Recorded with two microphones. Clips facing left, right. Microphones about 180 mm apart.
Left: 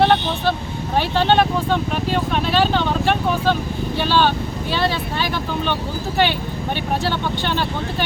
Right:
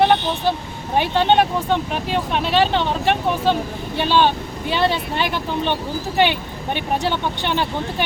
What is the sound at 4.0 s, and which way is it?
Speech, 20° right (ahead or behind).